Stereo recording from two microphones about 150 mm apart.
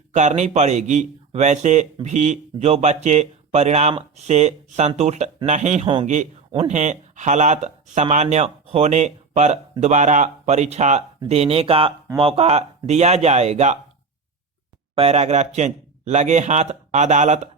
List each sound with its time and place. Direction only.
0.1 s a man's voice: 50° right (ahead or behind)
5.8 s a man's voice: 35° right (ahead or behind)
14.9 s a man's voice: 45° right (ahead or behind)